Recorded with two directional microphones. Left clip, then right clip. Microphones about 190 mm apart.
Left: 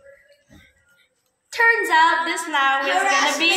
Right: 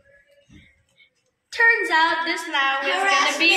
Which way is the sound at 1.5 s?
5° right (ahead or behind).